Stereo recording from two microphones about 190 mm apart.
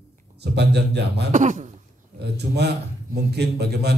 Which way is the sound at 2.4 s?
60° right (ahead or behind).